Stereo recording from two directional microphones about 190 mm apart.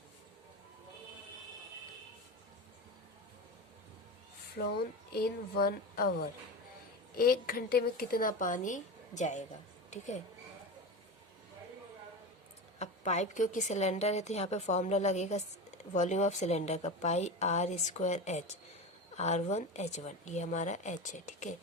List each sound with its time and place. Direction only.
4.6 s speech: 55° left (ahead or behind)
7.2 s speech: 50° left (ahead or behind)
12.8 s a woman's voice: 35° left (ahead or behind)